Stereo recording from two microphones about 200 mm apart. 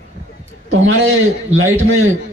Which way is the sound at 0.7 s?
75° right (ahead or behind).